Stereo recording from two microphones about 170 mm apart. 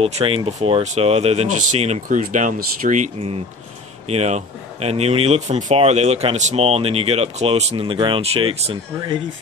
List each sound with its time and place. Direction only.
0.0 s speech: 35° right (ahead or behind)